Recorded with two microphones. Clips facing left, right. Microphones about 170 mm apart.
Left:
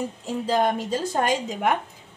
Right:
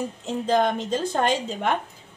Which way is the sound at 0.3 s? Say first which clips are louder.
Right 1 dB; 10° left (ahead or behind).